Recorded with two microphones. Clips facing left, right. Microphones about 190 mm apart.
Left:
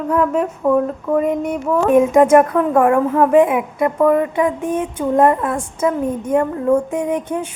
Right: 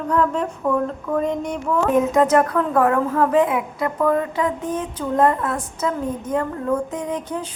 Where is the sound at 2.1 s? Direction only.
15° left (ahead or behind).